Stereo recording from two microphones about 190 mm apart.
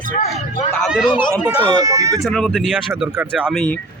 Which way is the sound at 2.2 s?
5° left (ahead or behind).